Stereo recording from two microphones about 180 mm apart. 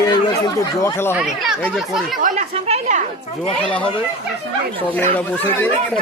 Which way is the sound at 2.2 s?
40° right (ahead or behind).